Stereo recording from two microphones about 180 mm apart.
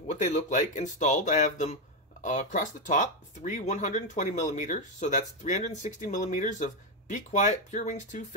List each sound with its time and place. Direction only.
0.1 s speech: 40° left (ahead or behind)